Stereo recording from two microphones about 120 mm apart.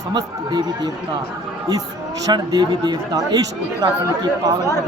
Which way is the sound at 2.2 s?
35° right (ahead or behind).